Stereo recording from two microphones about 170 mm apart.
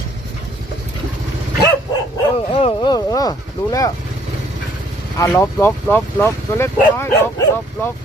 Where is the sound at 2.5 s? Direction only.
30° left (ahead or behind).